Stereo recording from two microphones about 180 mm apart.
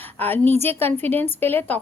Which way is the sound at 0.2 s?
10° left (ahead or behind).